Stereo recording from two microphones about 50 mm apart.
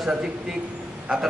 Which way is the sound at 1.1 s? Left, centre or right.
Right.